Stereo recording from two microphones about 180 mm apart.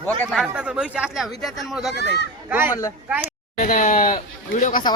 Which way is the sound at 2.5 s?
10° right (ahead or behind).